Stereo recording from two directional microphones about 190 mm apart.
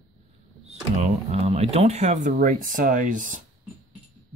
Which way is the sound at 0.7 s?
35° right (ahead or behind).